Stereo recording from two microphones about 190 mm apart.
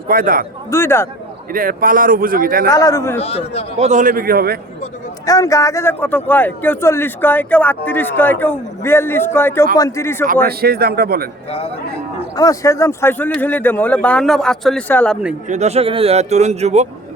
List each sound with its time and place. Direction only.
0.1 s speech: 50° right (ahead or behind)
0.7 s a man's voice: 15° left (ahead or behind)
1.5 s speech: 50° right (ahead or behind)
2.6 s a man's voice: 15° left (ahead or behind)
3.2 s a man's voice: 30° left (ahead or behind)
3.8 s speech: 40° right (ahead or behind)
5.2 s a man's voice: 15° left (ahead or behind)
10.4 s speech: 55° right (ahead or behind)
12.4 s a man's voice: 15° left (ahead or behind); by 15.4 s centre (ahead or behind)
15.4 s a man's voice: 35° right (ahead or behind)